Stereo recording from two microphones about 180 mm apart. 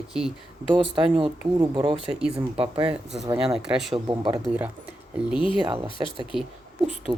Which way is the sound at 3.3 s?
5° right (ahead or behind).